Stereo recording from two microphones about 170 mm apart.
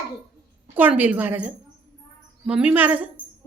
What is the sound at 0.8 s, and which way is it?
Speech, 10° right (ahead or behind).